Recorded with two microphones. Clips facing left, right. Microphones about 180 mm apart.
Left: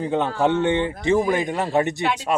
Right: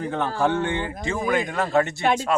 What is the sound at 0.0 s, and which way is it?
Speech, 20° left (ahead or behind).